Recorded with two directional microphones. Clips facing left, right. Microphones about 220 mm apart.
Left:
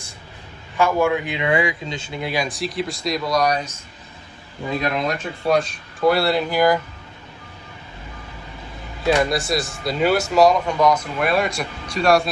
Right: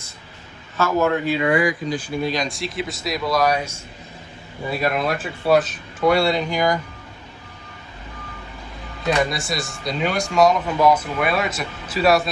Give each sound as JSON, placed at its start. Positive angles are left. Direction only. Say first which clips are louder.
{"t": 0.8, "sound": "a man's voice", "louder": "left 1 dB", "side_deg": 15}
{"t": 1.5, "sound": "speech", "louder": "right 2 dB", "side_deg": 25}
{"t": 2.3, "sound": "speech", "louder": "left 1 dB", "side_deg": 5}
{"t": 4.7, "sound": "speech", "louder": "right 1 dB", "side_deg": -5}
{"t": 9.0, "sound": "speech", "louder": "left 3 dB", "side_deg": 0}